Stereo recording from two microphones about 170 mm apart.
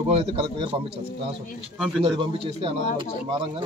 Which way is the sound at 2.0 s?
35° right (ahead or behind).